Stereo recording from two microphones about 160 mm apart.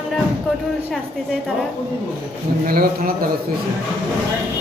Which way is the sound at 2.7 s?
65° right (ahead or behind).